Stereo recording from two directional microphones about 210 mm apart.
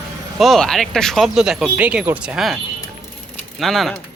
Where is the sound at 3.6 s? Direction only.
Centre (ahead or behind).